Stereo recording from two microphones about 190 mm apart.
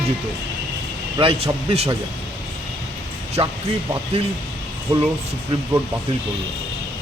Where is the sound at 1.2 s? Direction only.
30° right (ahead or behind).